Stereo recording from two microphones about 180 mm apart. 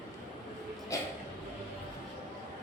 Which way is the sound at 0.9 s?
20° left (ahead or behind).